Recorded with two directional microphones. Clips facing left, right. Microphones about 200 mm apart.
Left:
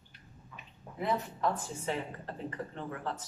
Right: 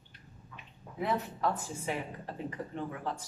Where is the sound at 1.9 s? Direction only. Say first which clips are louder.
Left 1 dB; 10° right (ahead or behind).